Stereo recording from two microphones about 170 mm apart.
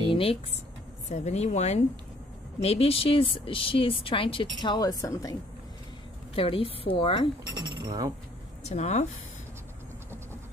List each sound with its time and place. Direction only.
0.1 s speech: 35° left (ahead or behind); by 5.4 s 20° left (ahead or behind)
6.3 s speech: 35° left (ahead or behind)
7.8 s speech: 20° right (ahead or behind)
8.6 s speech: 40° left (ahead or behind)